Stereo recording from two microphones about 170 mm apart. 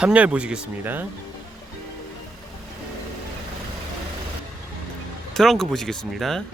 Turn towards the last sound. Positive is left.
turn(degrees=0)  # may be behind; listen again after turning